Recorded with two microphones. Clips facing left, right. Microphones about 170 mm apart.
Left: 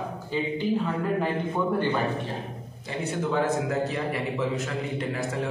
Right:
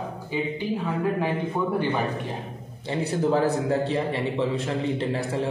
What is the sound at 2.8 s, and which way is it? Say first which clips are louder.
A man's voice: right 5 dB; 35° right (ahead or behind).